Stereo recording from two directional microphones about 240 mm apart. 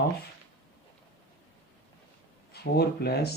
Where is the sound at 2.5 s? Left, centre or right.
Left.